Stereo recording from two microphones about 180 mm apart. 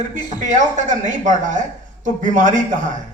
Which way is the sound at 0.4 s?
45° right (ahead or behind).